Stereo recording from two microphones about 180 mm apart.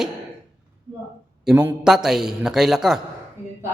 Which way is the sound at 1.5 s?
Centre (ahead or behind).